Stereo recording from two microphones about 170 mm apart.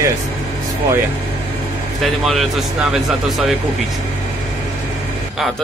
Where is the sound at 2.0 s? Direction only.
Centre (ahead or behind).